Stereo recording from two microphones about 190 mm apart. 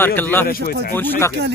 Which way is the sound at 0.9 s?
10° left (ahead or behind).